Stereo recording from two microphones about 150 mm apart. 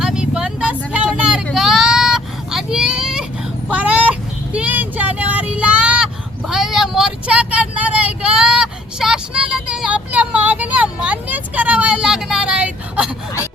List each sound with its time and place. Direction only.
0.0 s vehicle: 5° right (ahead or behind)
3.7 s child singing: 10° right (ahead or behind)
6.5 s vehicle: 5° right (ahead or behind)